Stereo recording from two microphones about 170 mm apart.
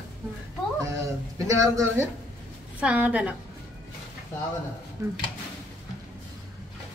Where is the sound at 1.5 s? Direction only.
20° right (ahead or behind).